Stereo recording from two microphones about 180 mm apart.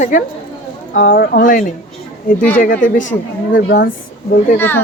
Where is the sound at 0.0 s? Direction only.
45° left (ahead or behind).